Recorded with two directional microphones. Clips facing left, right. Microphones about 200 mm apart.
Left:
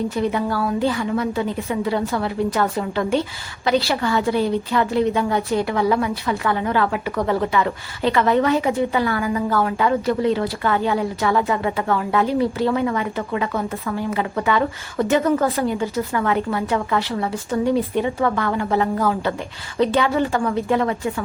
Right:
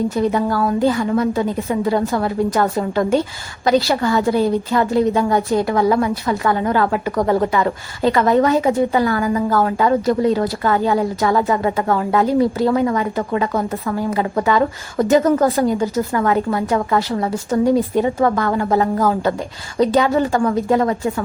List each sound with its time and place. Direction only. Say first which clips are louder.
0.2 s a woman's voice: right 3 dB; 45° right (ahead or behind)